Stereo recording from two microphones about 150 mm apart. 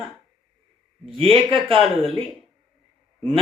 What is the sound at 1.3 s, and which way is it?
Speech, 35° right (ahead or behind).